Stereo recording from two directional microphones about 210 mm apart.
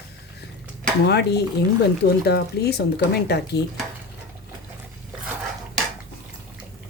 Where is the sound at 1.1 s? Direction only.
55° left (ahead or behind).